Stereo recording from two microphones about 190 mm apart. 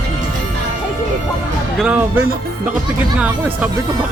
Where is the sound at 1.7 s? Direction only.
5° right (ahead or behind).